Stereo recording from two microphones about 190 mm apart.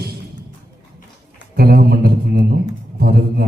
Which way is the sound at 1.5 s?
55° right (ahead or behind).